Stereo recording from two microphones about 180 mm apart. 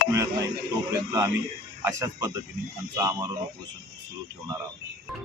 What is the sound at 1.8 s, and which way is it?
Speech, 15° right (ahead or behind).